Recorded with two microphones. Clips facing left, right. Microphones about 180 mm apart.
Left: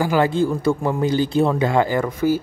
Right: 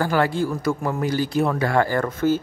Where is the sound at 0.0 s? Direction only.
15° left (ahead or behind).